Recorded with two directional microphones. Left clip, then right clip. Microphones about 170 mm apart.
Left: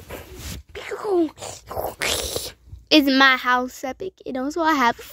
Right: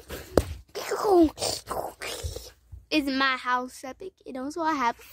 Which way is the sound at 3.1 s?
30° left (ahead or behind).